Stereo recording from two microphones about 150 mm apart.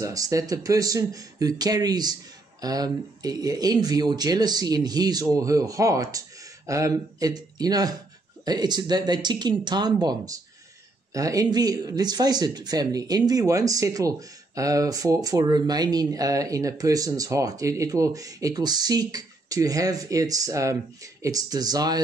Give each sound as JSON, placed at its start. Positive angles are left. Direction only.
{"t": 0.0, "sound": "speech", "side_deg": -20}